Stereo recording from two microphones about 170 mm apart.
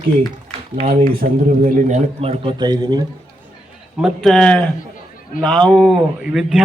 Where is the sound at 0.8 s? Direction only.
35° right (ahead or behind).